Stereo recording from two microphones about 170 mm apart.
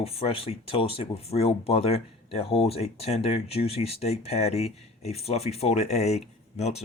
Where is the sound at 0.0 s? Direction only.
35° left (ahead or behind).